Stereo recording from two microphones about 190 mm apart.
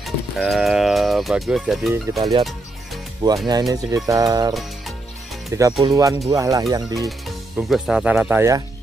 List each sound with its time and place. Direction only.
0.0 s speech: centre (ahead or behind)
1.9 s speech: 15° right (ahead or behind)
3.4 s speech: 20° right (ahead or behind)
7.1 s speech: centre (ahead or behind)